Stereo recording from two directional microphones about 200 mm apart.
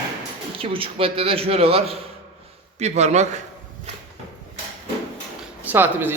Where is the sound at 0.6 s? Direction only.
25° right (ahead or behind).